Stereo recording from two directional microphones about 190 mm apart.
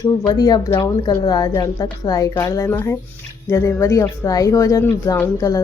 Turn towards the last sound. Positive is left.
turn(degrees=20)  # may be behind; listen again after turning